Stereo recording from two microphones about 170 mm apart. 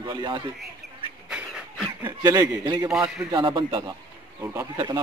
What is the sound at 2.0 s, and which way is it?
Speech, 20° right (ahead or behind).